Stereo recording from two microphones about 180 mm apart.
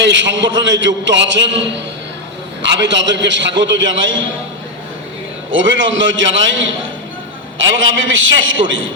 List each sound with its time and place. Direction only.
0.0 s a man's voice: 85° right
5.5 s a man's voice: 90° right
7.8 s a man's voice: 90° right